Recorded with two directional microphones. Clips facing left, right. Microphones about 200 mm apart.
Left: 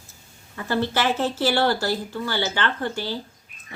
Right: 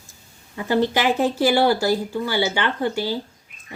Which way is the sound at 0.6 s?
15° right (ahead or behind).